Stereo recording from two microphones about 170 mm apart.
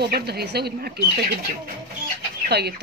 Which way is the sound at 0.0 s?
70° right (ahead or behind).